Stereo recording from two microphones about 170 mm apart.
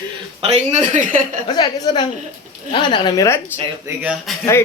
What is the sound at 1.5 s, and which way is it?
A woman's voice, 25° left (ahead or behind).